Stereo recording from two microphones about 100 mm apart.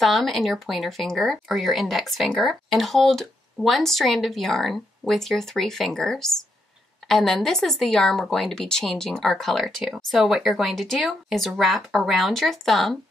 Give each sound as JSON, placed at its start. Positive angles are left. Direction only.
{"t": 0.0, "sound": "speech", "side_deg": 0}